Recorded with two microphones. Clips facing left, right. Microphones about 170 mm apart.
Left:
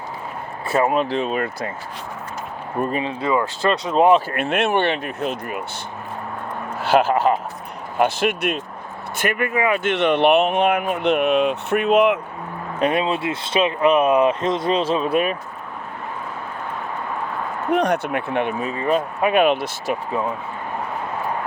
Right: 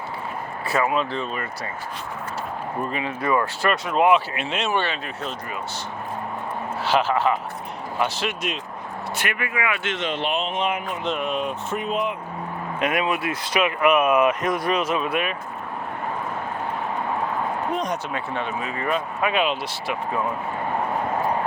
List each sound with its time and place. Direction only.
0.7 s speech: 40° left (ahead or behind)
1.1 s speech: 90° left
2.9 s speech: 30° left (ahead or behind)
3.9 s speech: 35° left (ahead or behind)
4.3 s speech: 55° left (ahead or behind)
6.8 s speech: 50° left (ahead or behind)
9.8 s speech: 65° left (ahead or behind); by 12.2 s 80° left
12.8 s speech: 30° left (ahead or behind)
17.7 s speech: 65° left (ahead or behind)
18.9 s speech: 50° left (ahead or behind)